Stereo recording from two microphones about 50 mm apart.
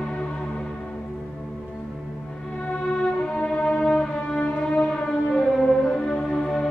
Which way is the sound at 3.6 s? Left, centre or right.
Centre.